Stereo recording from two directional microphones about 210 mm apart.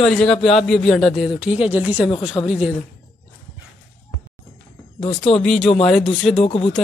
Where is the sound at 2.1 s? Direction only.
25° left (ahead or behind).